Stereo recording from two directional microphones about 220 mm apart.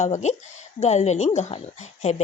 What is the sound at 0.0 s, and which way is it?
Speech, 30° left (ahead or behind).